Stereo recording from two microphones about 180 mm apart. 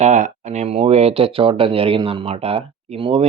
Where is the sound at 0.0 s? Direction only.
40° right (ahead or behind).